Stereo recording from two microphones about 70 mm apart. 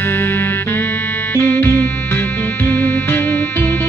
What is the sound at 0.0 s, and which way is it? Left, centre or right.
Music, left.